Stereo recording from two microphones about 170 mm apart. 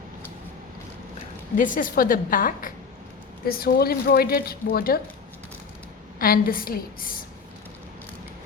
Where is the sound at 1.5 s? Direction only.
50° left (ahead or behind).